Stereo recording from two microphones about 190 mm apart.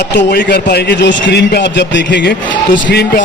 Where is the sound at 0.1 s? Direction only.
65° left (ahead or behind).